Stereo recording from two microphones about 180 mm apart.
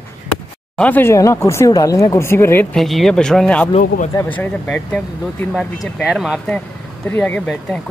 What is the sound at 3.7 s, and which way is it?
Speech, 40° left (ahead or behind).